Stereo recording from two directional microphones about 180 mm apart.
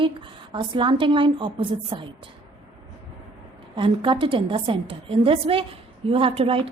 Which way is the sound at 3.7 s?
25° right (ahead or behind).